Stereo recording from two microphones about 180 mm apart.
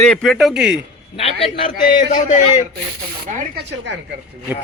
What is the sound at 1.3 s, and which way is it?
Speech, 35° left (ahead or behind).